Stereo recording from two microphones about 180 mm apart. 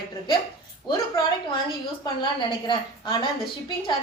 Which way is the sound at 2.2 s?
25° left (ahead or behind).